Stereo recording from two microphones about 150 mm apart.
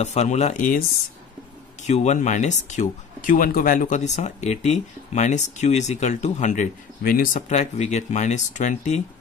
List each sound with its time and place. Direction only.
0.0 s speech: 45° left (ahead or behind)
7.0 s speech: 75° left (ahead or behind)
7.4 s speech: 50° left (ahead or behind)